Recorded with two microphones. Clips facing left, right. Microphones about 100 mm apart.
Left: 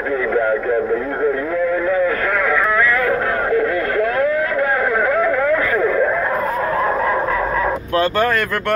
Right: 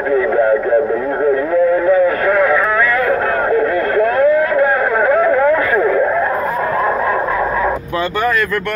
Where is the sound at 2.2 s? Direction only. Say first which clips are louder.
Right 5 dB; 15° right (ahead or behind).